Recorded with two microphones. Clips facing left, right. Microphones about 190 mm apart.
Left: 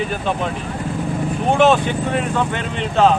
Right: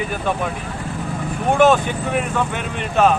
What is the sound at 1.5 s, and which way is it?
Speech, 15° left (ahead or behind).